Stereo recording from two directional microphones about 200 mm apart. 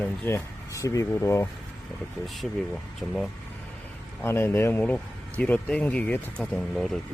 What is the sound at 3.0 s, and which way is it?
Speech, centre (ahead or behind).